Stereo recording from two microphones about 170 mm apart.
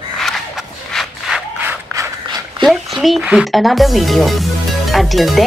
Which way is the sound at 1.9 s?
20° right (ahead or behind).